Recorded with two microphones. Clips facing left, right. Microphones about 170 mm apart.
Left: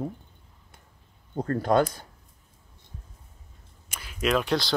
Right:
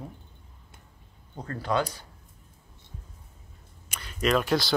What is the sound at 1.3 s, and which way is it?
Speech, 50° left (ahead or behind).